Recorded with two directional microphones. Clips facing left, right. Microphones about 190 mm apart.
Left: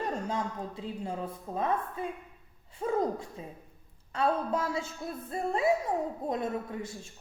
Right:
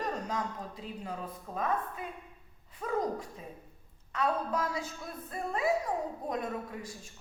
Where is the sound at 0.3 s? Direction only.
25° left (ahead or behind).